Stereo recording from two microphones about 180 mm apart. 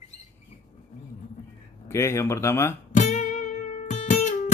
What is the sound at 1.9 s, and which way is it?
Speech, 15° left (ahead or behind).